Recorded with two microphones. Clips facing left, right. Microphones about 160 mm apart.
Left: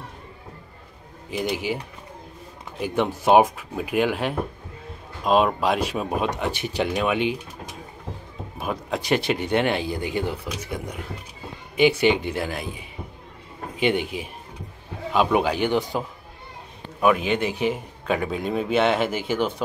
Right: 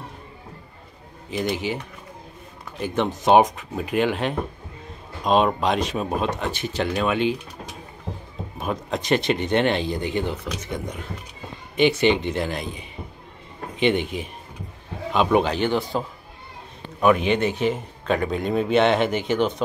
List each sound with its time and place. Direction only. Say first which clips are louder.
1.3 s speech: right 1 dB; 10° left (ahead or behind)
2.8 s speech: even; 10° left (ahead or behind)
8.5 s speech: right 1 dB; 10° left (ahead or behind)
17.0 s speech: right 2 dB; 5° left (ahead or behind)